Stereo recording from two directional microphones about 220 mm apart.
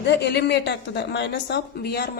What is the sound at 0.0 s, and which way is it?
A woman's voice, 50° left (ahead or behind).